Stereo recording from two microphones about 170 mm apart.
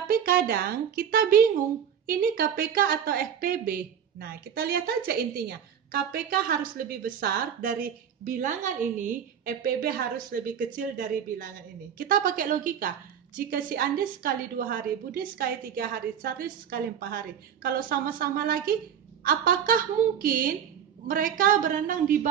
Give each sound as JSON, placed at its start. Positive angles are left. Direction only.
{"t": 0.1, "sound": "a woman's voice", "side_deg": -60}